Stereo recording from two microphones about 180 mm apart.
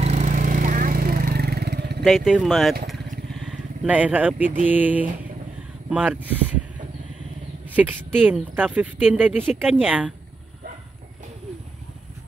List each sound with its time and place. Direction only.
0.0 s vehicle: 40° right (ahead or behind); by 2.0 s 65° right (ahead or behind)
2.0 s speech: centre (ahead or behind)
7.7 s speech: 10° right (ahead or behind)